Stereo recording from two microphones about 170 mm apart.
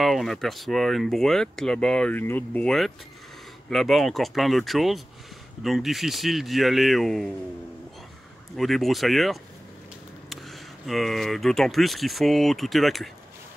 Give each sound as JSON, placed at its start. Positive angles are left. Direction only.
{"t": 0.0, "sound": "speech", "side_deg": 0}
{"t": 8.5, "sound": "speech", "side_deg": 0}